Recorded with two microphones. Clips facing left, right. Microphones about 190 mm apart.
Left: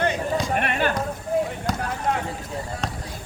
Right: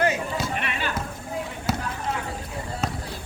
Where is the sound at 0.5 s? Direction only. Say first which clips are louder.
Left 6 dB; 50° left (ahead or behind).